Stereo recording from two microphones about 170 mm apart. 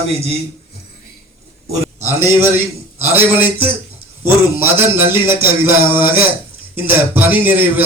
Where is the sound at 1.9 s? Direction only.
15° right (ahead or behind).